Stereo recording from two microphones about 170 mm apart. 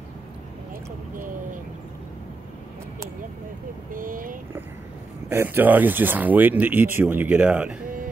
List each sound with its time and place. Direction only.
1.1 s vehicle: 55° right (ahead or behind)
3.9 s speech: 55° right (ahead or behind)
5.3 s speech: 15° right (ahead or behind)